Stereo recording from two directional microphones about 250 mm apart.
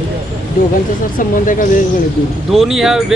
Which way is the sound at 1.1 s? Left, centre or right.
Left.